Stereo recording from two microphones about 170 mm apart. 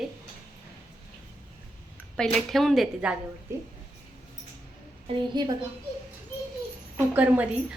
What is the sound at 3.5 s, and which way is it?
Speech, 15° right (ahead or behind).